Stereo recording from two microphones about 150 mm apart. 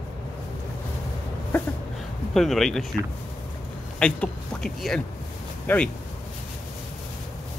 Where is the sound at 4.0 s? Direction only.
5° left (ahead or behind).